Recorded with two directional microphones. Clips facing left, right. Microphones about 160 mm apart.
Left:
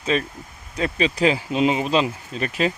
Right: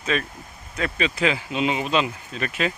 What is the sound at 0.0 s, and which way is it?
Speech, 30° left (ahead or behind).